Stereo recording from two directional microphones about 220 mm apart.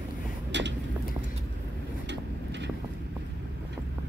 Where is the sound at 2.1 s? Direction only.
50° right (ahead or behind).